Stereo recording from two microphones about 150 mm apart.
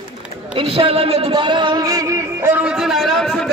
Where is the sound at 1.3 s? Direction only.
30° right (ahead or behind); by 3.5 s 5° left (ahead or behind).